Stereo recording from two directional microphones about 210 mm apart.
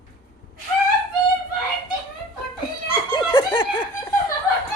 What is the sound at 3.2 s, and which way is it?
Snicker, 25° left (ahead or behind).